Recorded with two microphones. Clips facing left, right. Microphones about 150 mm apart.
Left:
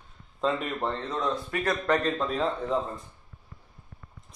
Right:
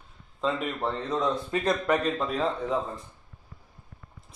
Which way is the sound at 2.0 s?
Centre (ahead or behind).